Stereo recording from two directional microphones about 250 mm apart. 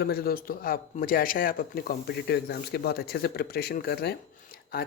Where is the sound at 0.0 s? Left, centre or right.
Left.